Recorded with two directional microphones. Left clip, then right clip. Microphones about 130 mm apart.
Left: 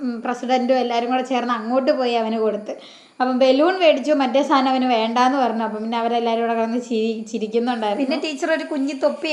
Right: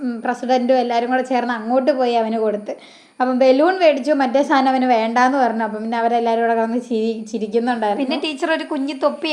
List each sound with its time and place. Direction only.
0.0 s a woman's voice: 25° right (ahead or behind)
7.9 s a woman's voice: 10° right (ahead or behind)